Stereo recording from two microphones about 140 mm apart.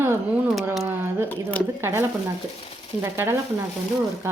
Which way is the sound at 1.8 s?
15° right (ahead or behind).